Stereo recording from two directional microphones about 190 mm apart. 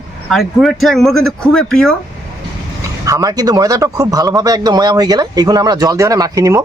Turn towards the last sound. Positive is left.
turn(degrees=-15)  # may be behind; listen again after turning